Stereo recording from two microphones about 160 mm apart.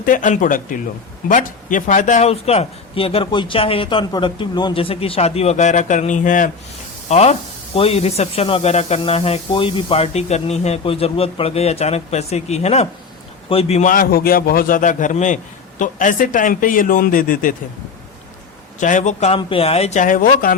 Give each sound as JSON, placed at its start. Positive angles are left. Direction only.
{"t": 0.0, "sound": "speech", "side_deg": 55}
{"t": 13.9, "sound": "speech", "side_deg": 65}
{"t": 18.8, "sound": "speech", "side_deg": 50}
{"t": 19.4, "sound": "speech", "side_deg": 35}